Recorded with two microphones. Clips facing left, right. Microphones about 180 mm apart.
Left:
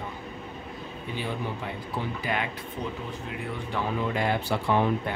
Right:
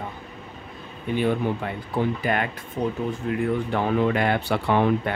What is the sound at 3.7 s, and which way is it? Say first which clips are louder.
Speech: right 5 dB; 60° right (ahead or behind).